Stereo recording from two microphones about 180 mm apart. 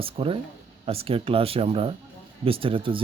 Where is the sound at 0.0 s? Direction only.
30° right (ahead or behind).